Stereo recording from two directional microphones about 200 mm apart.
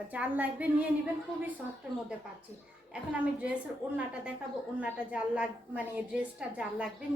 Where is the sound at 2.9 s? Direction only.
5° right (ahead or behind).